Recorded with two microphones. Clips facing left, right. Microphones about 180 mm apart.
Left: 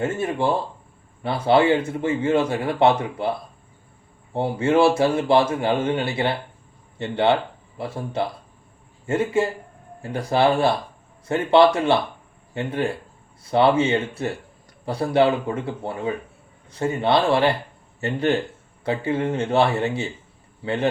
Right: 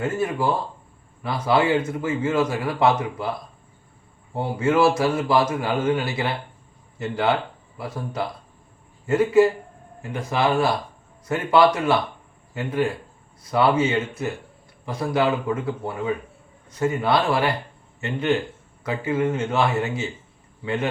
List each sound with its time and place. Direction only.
0.0 s a man's voice: 25° left (ahead or behind)
4.4 s a man's voice: 30° left (ahead or behind)
18.0 s speech: 35° left (ahead or behind)